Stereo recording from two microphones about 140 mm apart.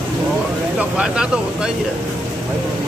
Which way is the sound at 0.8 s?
5° right (ahead or behind).